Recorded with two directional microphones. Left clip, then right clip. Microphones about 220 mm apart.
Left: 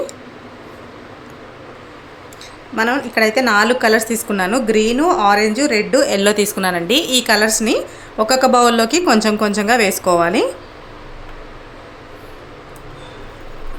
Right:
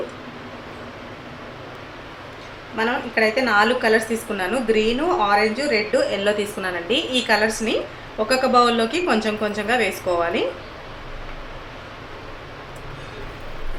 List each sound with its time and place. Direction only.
2.7 s a woman's voice: 55° left (ahead or behind)